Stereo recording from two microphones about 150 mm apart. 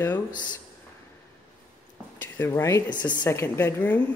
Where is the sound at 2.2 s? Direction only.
15° left (ahead or behind).